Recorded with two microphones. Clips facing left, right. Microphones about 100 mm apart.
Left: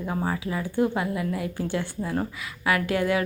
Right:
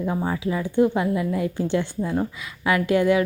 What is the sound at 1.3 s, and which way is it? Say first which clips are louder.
Speech: right 5 dB; 25° right (ahead or behind).